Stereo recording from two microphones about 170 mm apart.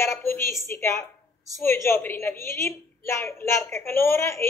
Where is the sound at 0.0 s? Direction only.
15° left (ahead or behind).